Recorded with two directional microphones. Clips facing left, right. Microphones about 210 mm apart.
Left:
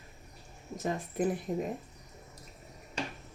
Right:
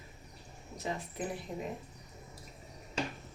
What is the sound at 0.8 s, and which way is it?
Speech, 50° left (ahead or behind).